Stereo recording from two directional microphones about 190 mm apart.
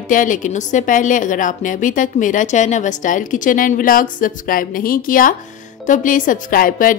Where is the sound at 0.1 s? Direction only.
45° left (ahead or behind).